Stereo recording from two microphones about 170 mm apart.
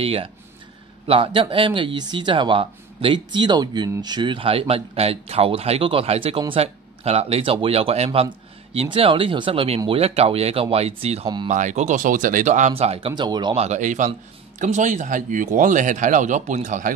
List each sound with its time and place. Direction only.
0.0 s speech: 35° right (ahead or behind)
13.7 s speech: 45° right (ahead or behind)